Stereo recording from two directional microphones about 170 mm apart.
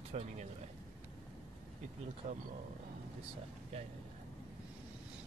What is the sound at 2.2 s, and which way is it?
Speech, 45° right (ahead or behind).